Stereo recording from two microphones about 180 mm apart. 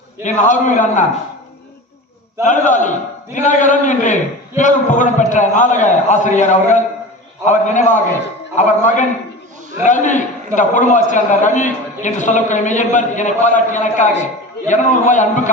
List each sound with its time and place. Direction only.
0.2 s a man's voice: 45° left (ahead or behind)
2.4 s a man's voice: 45° left (ahead or behind)